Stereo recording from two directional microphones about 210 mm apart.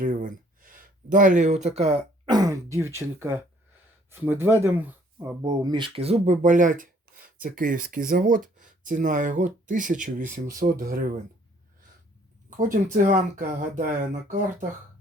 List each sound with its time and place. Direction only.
0.0 s a sound: 40° right (ahead or behind)
2.3 s speech: 15° right (ahead or behind); by 11.0 s 45° right (ahead or behind)
12.5 s speech: 40° right (ahead or behind)